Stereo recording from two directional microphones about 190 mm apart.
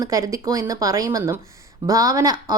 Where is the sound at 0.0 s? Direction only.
20° right (ahead or behind).